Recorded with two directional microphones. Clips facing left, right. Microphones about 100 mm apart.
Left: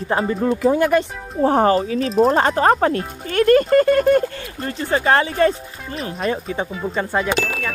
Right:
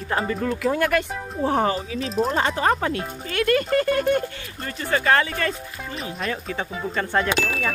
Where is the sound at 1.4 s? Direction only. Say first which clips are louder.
Left 7 dB; 45° left (ahead or behind); by 5.5 s 30° left (ahead or behind).